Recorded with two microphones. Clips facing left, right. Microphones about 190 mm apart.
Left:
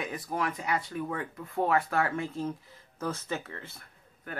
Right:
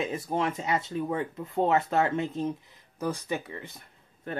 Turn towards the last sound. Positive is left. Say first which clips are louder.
# right 5 dB
turn(degrees=-30)  # may be behind; listen again after turning